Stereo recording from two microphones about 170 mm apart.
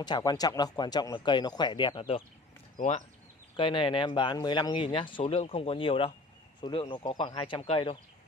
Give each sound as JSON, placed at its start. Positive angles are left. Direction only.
{"t": 0.0, "sound": "speech", "side_deg": 25}
{"t": 2.8, "sound": "speech", "side_deg": 50}
{"t": 3.5, "sound": "speech", "side_deg": 30}